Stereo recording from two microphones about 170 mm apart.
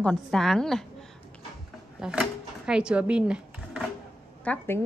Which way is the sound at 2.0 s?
5° right (ahead or behind).